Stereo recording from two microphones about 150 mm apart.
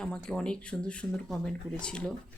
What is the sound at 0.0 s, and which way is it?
Speech, 5° left (ahead or behind).